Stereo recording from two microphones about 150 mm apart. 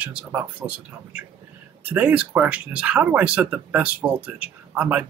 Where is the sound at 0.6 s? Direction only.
20° right (ahead or behind).